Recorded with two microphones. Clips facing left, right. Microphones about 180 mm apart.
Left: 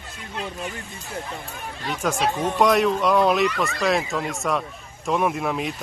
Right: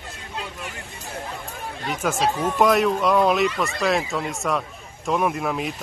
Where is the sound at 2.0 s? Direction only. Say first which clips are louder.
Even; 5° right (ahead or behind).